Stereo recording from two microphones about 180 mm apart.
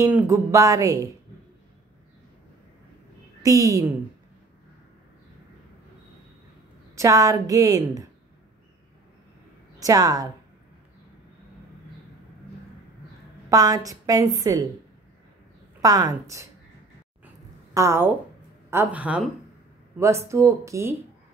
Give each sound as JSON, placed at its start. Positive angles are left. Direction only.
{"t": 0.0, "sound": "a woman's voice", "side_deg": -10}
{"t": 3.4, "sound": "a woman's voice", "side_deg": -20}
{"t": 7.0, "sound": "a woman's voice", "side_deg": -20}
{"t": 9.8, "sound": "a woman's voice", "side_deg": -20}
{"t": 13.5, "sound": "a woman's voice", "side_deg": -20}
{"t": 15.8, "sound": "a woman's voice", "side_deg": -20}
{"t": 17.7, "sound": "a woman's voice", "side_deg": -15}